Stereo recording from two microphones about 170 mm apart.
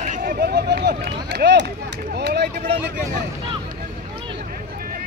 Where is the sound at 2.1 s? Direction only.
75° right (ahead or behind).